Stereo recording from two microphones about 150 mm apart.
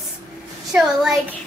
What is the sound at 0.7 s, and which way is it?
Speech, 5° right (ahead or behind).